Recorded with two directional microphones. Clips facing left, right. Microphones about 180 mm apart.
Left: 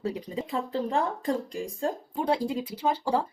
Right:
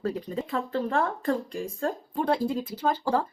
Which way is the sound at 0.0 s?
15° left (ahead or behind).